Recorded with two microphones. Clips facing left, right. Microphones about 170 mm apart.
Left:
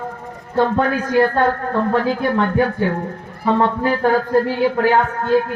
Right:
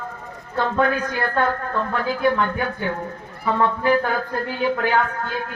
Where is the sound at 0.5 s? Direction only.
30° left (ahead or behind).